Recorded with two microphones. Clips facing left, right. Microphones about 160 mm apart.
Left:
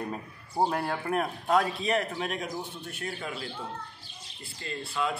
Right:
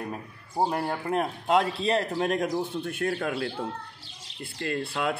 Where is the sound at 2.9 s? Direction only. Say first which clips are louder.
Right 8 dB; 60° right (ahead or behind).